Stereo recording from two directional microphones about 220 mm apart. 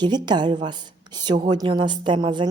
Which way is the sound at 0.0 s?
20° right (ahead or behind).